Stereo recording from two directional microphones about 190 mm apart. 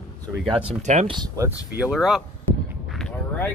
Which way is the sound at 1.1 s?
20° right (ahead or behind).